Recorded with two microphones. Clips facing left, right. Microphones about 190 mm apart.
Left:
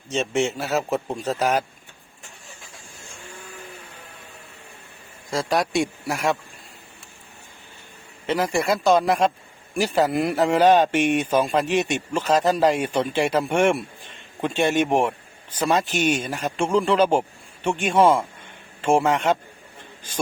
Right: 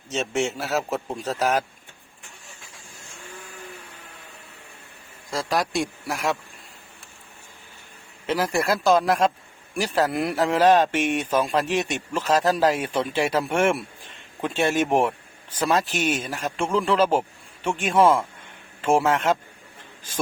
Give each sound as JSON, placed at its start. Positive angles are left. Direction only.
{"t": 0.1, "sound": "speech", "side_deg": -5}
{"t": 5.3, "sound": "speech", "side_deg": 0}
{"t": 8.3, "sound": "speech", "side_deg": 0}